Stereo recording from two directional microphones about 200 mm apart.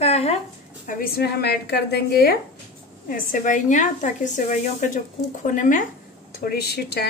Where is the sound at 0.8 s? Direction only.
45° left (ahead or behind).